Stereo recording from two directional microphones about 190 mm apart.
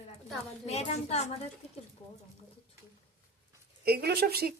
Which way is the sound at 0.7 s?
35° left (ahead or behind).